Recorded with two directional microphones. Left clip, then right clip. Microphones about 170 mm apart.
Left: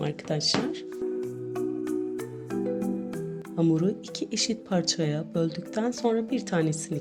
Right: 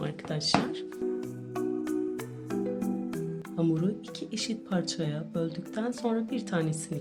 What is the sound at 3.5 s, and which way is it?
Speech, 30° left (ahead or behind).